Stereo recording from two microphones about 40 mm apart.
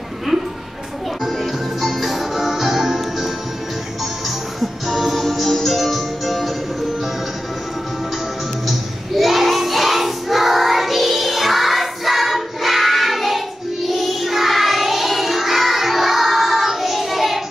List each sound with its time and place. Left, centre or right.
1.2 s music: centre
4.6 s music: centre
8.6 s child singing: centre
13.8 s music: centre